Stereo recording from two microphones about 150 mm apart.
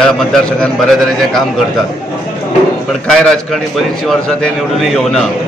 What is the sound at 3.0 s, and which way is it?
Speech, 5° left (ahead or behind).